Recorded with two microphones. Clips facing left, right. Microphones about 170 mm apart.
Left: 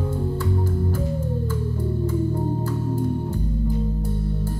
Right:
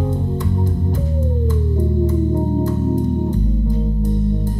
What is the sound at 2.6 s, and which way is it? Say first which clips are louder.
Music: right 6 dB; 15° right (ahead or behind).